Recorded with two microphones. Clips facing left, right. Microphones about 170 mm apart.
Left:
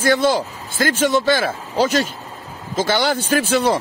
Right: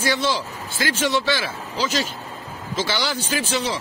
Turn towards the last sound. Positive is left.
turn(degrees=55)  # may be behind; listen again after turning